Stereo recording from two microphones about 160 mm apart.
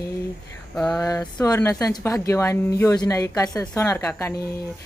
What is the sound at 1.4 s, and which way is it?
A woman's voice, 20° left (ahead or behind).